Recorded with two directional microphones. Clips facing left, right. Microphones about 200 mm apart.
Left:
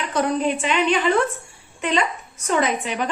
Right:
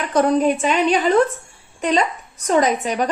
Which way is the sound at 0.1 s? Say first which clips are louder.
Right 5 dB; 45° right (ahead or behind).